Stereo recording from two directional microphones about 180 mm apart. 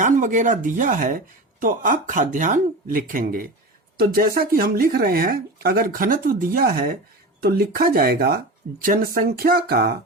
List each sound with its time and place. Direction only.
0.0 s speech: 45° right (ahead or behind)